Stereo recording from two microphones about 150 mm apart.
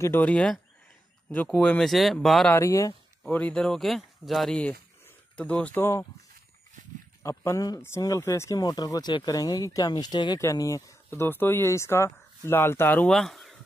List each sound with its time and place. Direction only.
0.0 s speech: 10° left (ahead or behind)
2.5 s speech: 20° left (ahead or behind)
3.3 s speech: 10° left (ahead or behind)
7.2 s speech: 20° left (ahead or behind)
13.1 s speech: centre (ahead or behind)